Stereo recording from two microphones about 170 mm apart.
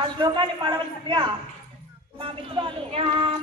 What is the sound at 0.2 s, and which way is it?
A man's voice, 30° right (ahead or behind).